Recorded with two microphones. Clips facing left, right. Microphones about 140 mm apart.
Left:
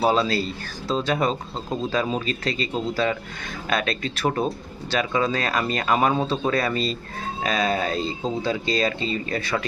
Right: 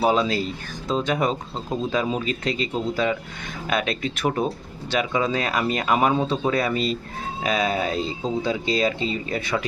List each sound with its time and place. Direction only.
0.0 s speech: 15° right (ahead or behind)